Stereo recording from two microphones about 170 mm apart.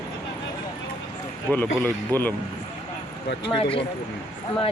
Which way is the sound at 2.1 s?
20° right (ahead or behind).